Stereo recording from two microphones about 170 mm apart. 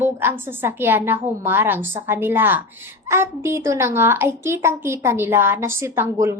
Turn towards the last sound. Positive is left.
turn(degrees=-15)  # may be behind; listen again after turning